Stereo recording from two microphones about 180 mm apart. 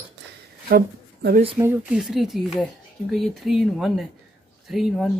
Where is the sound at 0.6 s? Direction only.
55° right (ahead or behind).